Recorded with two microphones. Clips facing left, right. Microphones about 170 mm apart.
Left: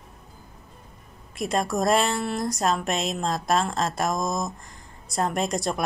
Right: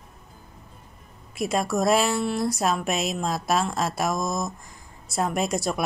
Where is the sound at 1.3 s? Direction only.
5° right (ahead or behind).